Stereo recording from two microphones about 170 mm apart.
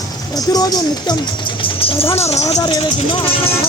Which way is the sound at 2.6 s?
25° left (ahead or behind).